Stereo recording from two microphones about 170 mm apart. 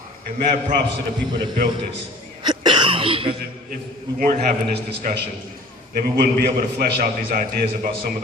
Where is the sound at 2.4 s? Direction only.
25° right (ahead or behind).